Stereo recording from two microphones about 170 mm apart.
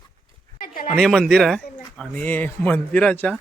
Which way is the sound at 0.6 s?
55° left (ahead or behind).